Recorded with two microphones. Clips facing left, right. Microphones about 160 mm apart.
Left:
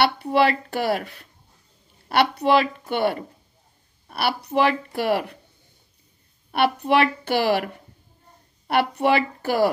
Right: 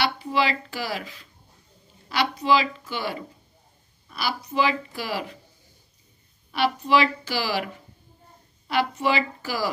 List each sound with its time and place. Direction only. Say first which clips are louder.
0.0 s a woman's voice: left 5 dB; 60° left (ahead or behind)
6.5 s a woman's voice: left 2 dB; 60° left (ahead or behind)